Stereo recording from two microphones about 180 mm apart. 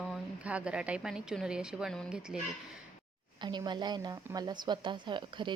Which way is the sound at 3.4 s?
25° right (ahead or behind).